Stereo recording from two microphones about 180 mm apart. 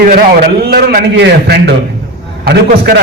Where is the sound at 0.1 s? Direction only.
55° right (ahead or behind).